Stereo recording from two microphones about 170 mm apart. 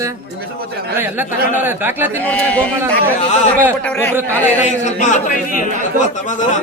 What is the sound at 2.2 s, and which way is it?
Speech, 10° left (ahead or behind).